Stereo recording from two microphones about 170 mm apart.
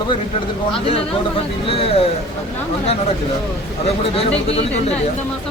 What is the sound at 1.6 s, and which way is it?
Speech, 35° left (ahead or behind).